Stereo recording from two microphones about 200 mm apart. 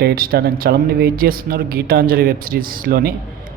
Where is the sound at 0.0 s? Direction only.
50° right (ahead or behind).